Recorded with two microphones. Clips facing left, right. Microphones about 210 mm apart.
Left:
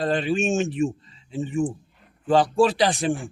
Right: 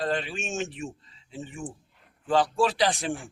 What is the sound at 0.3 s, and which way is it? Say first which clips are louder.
Speech: left 10 dB; 60° left (ahead or behind).